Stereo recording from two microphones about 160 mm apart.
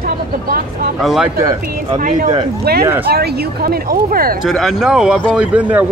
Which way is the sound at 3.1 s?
70° right (ahead or behind).